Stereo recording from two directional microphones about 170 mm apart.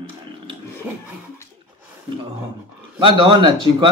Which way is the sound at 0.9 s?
10° right (ahead or behind).